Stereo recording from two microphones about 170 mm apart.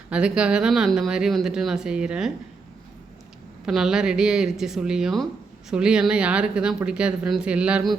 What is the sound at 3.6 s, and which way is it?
Speech, 5° right (ahead or behind).